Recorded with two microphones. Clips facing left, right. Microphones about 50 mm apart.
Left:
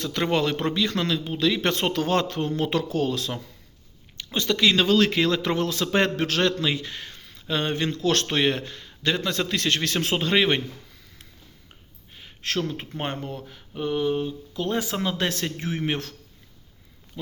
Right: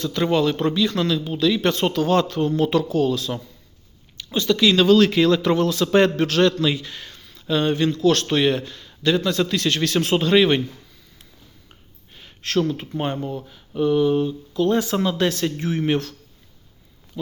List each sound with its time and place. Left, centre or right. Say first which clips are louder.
0.0 s speech: right 4 dB; left
2.9 s a man's voice: right 5 dB; left
11.7 s a sound: right 1 dB; centre
13.0 s speech: right 4 dB; left
13.7 s speech: right 7 dB; centre
15.3 s speech: right 5 dB; left